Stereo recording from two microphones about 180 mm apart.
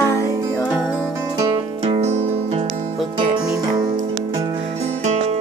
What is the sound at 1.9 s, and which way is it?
Music, 35° right (ahead or behind).